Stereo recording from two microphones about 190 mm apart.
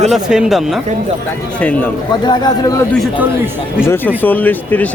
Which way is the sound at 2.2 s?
20° left (ahead or behind).